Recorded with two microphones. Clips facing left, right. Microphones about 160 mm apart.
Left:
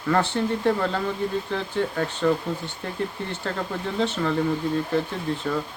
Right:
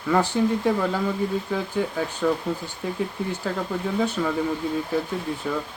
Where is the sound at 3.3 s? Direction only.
10° right (ahead or behind).